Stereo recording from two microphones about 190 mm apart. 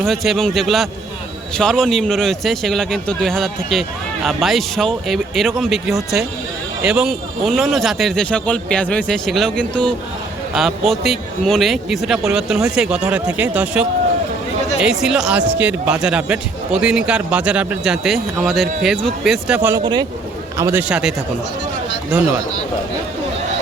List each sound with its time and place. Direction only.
0.0 s speech: centre (ahead or behind)
19.8 s a man's voice: 20° right (ahead or behind); by 21.1 s 5° right (ahead or behind)